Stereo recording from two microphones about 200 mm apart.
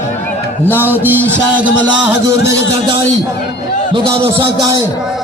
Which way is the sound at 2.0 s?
10° right (ahead or behind).